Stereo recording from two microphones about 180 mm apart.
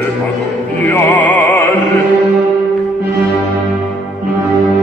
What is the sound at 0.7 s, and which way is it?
Music, 10° left (ahead or behind).